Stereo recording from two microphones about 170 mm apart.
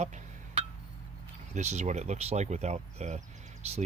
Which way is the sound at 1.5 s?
45° right (ahead or behind).